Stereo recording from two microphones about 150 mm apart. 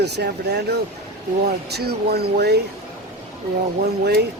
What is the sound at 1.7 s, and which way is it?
Speech, 90° right.